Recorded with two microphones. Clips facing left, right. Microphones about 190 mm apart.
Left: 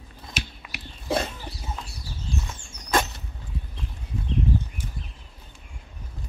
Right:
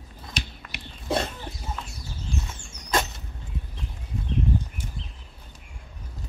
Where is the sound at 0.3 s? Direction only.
5° left (ahead or behind).